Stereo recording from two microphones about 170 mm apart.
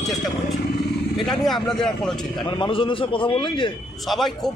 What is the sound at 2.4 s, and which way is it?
A man's voice, 30° left (ahead or behind).